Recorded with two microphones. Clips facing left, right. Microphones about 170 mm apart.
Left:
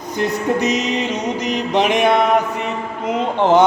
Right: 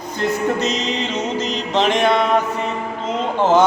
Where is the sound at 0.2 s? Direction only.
15° left (ahead or behind).